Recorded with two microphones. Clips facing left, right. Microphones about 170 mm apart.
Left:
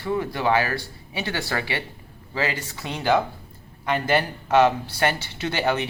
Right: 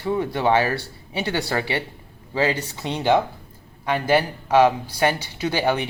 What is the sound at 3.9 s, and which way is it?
Speech, 10° right (ahead or behind).